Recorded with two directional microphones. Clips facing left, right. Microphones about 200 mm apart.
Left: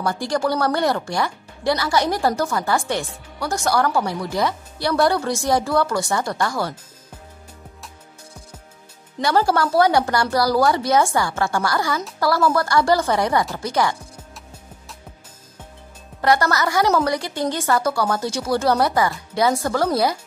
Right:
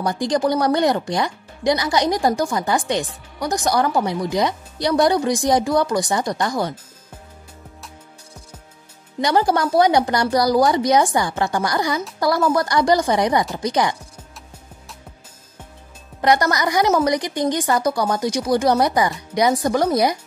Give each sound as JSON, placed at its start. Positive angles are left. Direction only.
{"t": 0.0, "sound": "speech", "side_deg": -15}
{"t": 9.2, "sound": "speech", "side_deg": -15}
{"t": 16.2, "sound": "speech", "side_deg": -15}